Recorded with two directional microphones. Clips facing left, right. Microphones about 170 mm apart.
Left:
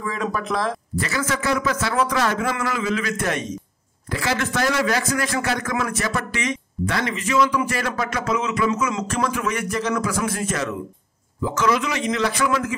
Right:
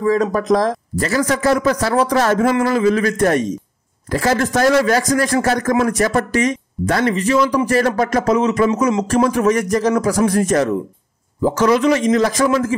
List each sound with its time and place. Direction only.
0.0 s a man's voice: 40° right (ahead or behind)